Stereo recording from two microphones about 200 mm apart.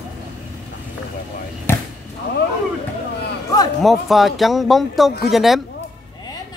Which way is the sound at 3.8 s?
Centre (ahead or behind).